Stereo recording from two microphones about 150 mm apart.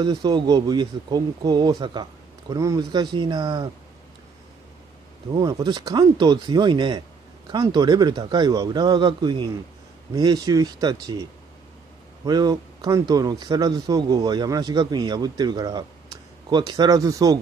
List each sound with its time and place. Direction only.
0.0 s speech: 30° right (ahead or behind)
5.3 s speech: 30° right (ahead or behind)
12.3 s speech: 25° right (ahead or behind)